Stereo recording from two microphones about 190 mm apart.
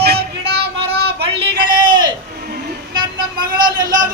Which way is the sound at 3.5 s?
45° right (ahead or behind).